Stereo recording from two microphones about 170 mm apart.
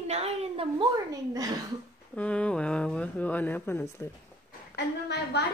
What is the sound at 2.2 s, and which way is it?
Speech, 5° left (ahead or behind).